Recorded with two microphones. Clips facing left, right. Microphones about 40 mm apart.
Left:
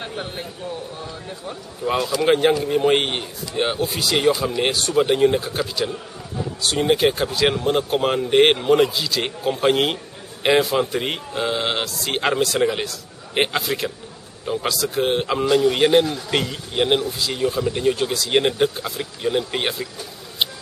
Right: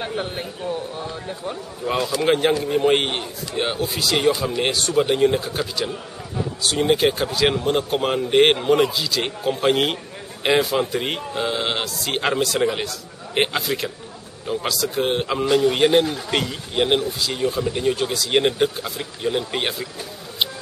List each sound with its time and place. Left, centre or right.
0.0 s speech: centre
1.9 s speech: centre